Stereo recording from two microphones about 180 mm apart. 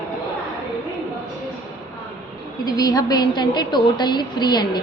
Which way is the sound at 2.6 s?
20° left (ahead or behind).